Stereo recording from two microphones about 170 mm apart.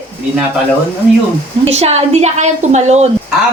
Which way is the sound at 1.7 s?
40° right (ahead or behind).